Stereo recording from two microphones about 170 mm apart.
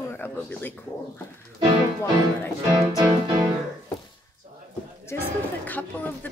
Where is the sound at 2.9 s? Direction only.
25° right (ahead or behind).